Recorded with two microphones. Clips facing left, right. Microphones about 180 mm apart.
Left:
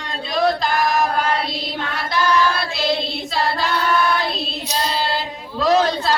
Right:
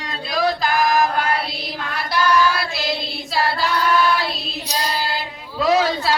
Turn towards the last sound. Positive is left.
turn(degrees=-5)  # may be behind; listen again after turning